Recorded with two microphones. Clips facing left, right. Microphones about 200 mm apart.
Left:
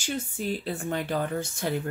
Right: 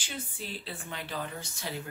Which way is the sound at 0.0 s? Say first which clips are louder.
Left 10 dB; 45° left (ahead or behind).